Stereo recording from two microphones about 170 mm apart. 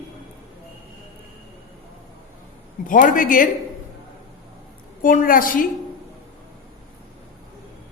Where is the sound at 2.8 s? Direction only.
50° left (ahead or behind).